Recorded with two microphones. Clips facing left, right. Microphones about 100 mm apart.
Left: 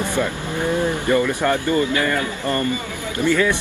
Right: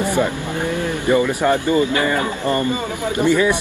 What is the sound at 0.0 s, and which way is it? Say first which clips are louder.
Speech: right 3 dB; 15° right (ahead or behind).